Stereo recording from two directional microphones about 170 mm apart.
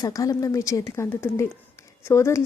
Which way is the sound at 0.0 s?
20° left (ahead or behind).